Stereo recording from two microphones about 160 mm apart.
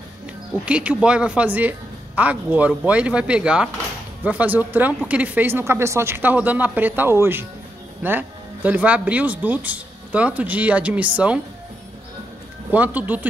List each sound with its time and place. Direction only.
0.7 s speech: 5° right (ahead or behind)
12.7 s speech: 10° right (ahead or behind)